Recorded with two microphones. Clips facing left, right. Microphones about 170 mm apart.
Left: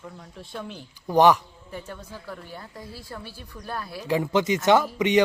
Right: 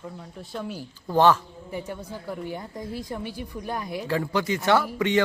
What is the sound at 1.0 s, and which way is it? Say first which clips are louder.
Speech: left 2 dB; 15° left (ahead or behind).